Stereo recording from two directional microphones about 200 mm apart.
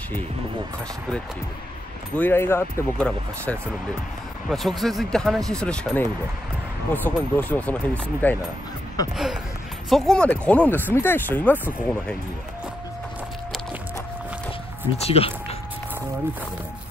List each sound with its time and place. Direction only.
2.1 s speech: 10° left (ahead or behind)
9.1 s speech: centre (ahead or behind)
15.0 s speech: 30° left (ahead or behind)